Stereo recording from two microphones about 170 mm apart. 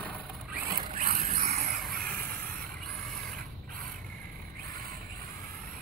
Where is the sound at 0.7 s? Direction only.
55° right (ahead or behind).